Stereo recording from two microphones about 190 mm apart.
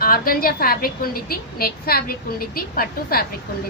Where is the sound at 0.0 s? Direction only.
50° left (ahead or behind).